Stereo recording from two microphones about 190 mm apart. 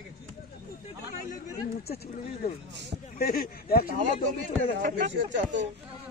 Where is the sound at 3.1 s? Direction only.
50° left (ahead or behind).